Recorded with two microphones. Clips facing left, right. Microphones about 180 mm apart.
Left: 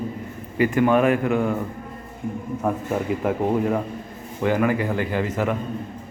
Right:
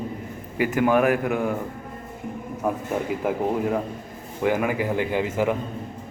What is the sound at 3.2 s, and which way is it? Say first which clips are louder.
A man's voice: left 2 dB; 5° right (ahead or behind).